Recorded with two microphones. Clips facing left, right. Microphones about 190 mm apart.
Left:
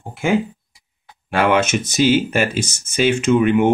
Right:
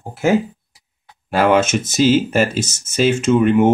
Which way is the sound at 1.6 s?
45° right (ahead or behind).